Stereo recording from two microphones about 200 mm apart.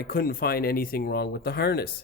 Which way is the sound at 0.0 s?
50° left (ahead or behind).